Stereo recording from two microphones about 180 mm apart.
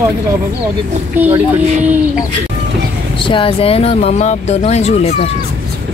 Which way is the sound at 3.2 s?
30° left (ahead or behind).